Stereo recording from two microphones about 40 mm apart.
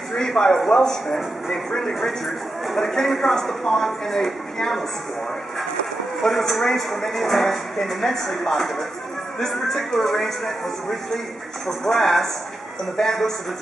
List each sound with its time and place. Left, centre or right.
0.1 s speech: centre
1.7 s speech: centre
6.2 s speech: centre